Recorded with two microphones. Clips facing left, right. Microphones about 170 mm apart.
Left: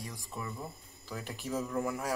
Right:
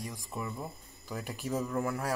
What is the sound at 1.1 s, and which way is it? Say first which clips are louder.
Speech: right 2 dB; centre (ahead or behind).